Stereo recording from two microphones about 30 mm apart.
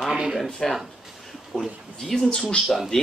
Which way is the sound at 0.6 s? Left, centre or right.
Centre.